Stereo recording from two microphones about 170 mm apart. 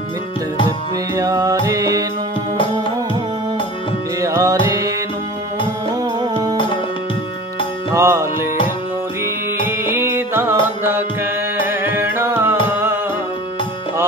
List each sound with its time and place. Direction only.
1.1 s music: 20° right (ahead or behind)
4.2 s music: 20° right (ahead or behind)
6.5 s music: 30° left (ahead or behind)
7.9 s music: 15° right (ahead or behind)
9.7 s music: 15° right (ahead or behind)